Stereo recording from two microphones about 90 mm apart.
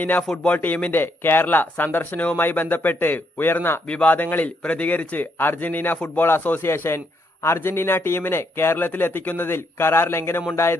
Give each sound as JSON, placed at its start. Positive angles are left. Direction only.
{"t": 0.0, "sound": "speech", "side_deg": 20}